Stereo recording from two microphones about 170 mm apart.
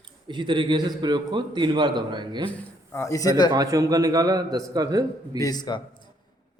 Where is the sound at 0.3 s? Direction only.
30° right (ahead or behind).